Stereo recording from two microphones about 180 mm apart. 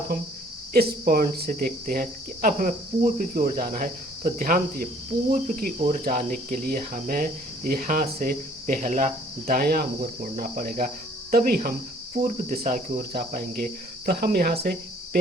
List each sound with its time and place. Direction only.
0.7 s cricket: 55° right (ahead or behind)